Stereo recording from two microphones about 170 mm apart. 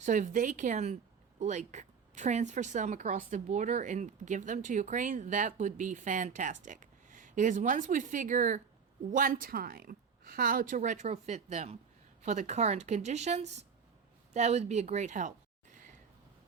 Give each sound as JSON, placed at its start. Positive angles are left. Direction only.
{"t": 0.0, "sound": "speech", "side_deg": -50}